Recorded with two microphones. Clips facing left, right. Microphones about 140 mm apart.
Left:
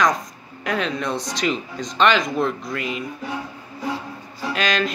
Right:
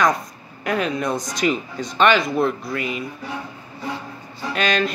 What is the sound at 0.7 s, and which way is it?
Speech, 5° right (ahead or behind).